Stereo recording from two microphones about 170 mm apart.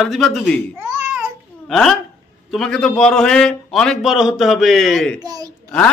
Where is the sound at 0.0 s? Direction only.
Centre (ahead or behind).